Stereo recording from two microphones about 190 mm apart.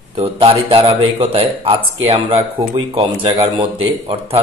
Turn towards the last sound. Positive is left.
turn(degrees=-25)  # may be behind; listen again after turning